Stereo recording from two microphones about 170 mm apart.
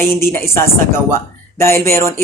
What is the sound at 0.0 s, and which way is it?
Speech, 15° left (ahead or behind).